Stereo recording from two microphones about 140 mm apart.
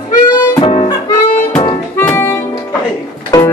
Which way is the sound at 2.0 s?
15° left (ahead or behind).